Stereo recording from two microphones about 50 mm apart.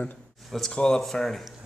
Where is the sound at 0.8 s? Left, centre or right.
Centre.